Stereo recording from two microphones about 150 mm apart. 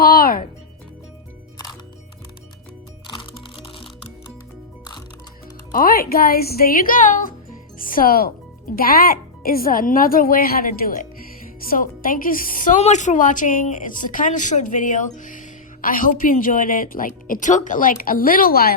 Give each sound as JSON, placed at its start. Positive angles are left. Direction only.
{"t": 0.0, "sound": "music", "side_deg": 75}
{"t": 3.1, "sound": "music", "side_deg": 35}
{"t": 5.7, "sound": "a woman's voice", "side_deg": 80}